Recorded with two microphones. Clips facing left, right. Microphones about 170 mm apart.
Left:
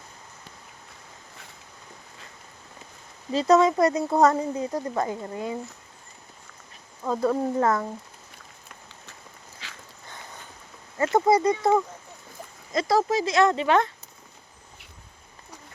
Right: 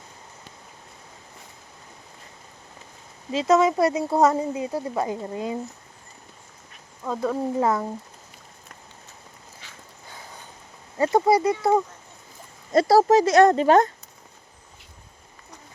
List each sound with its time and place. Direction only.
3.3 s speech: centre (ahead or behind); by 5.5 s 20° right (ahead or behind)
7.0 s speech: 5° left (ahead or behind)
7.6 s speech: 10° right (ahead or behind)
9.6 s a sound: 90° left
10.9 s speech: 15° right (ahead or behind)
12.7 s speech: 40° right (ahead or behind)